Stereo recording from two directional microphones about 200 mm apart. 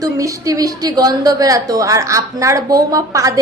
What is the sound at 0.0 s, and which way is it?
Speech, 15° right (ahead or behind).